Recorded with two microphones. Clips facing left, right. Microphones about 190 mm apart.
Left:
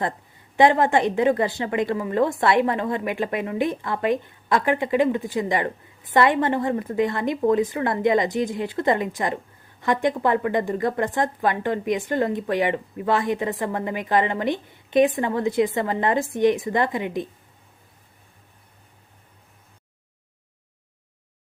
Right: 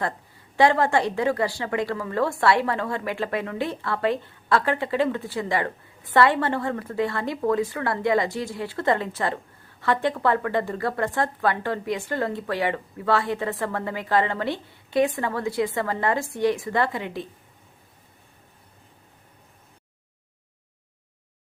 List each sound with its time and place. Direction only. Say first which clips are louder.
0.5 s a woman's voice: left 2 dB; 20° left (ahead or behind)